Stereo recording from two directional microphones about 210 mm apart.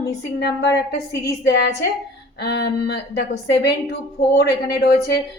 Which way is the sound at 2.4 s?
50° left (ahead or behind).